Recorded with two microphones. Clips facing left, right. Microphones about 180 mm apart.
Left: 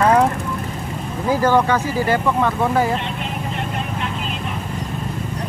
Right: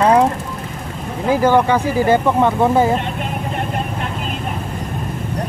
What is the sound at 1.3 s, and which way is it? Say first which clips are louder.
Speech: right 3 dB; 15° right (ahead or behind).